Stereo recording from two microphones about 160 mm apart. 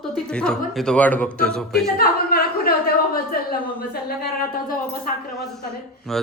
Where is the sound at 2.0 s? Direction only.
75° left (ahead or behind).